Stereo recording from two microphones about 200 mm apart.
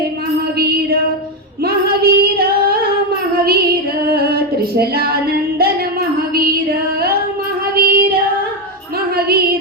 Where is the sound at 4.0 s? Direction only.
50° right (ahead or behind).